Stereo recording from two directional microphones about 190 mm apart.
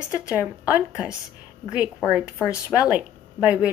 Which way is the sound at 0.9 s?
5° right (ahead or behind).